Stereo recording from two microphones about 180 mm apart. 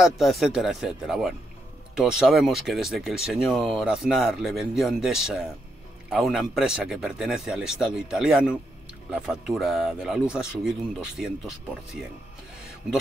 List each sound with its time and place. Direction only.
0.0 s speech: centre (ahead or behind)